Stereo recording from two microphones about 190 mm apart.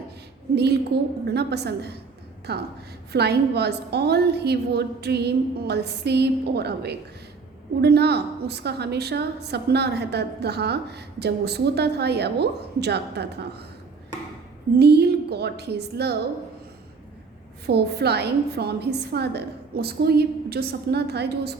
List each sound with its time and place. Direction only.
0.5 s a woman's voice: 60° right (ahead or behind)
14.8 s a woman's voice: 60° right (ahead or behind)
17.7 s a woman's voice: 60° right (ahead or behind)